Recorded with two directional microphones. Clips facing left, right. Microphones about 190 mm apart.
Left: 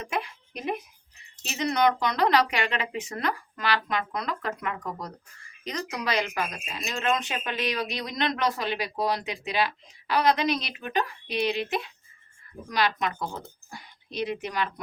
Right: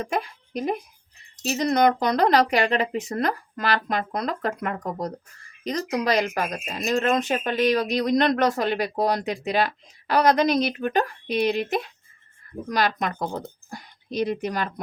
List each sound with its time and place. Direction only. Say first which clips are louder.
0.0 s a woman's voice: right 4 dB; 35° right (ahead or behind)